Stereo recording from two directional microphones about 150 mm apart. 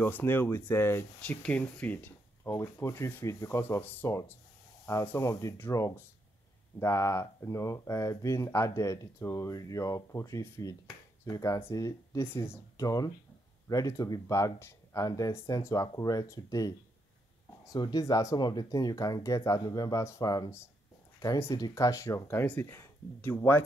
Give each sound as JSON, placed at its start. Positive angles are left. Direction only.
{"t": 0.0, "sound": "speech", "side_deg": 15}
{"t": 17.7, "sound": "speech", "side_deg": 25}